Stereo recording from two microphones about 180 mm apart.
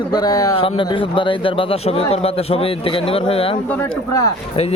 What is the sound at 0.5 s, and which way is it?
A man's voice, 30° left (ahead or behind).